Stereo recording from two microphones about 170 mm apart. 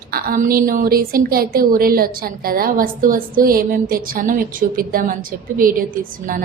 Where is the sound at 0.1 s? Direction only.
60° right (ahead or behind).